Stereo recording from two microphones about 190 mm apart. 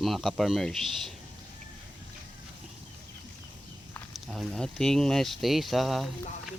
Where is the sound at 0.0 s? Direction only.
Centre (ahead or behind).